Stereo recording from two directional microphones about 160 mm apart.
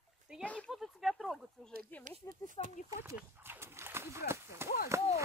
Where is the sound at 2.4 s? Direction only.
55° right (ahead or behind).